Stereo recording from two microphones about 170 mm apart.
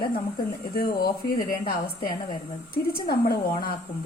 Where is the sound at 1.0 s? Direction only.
60° left (ahead or behind).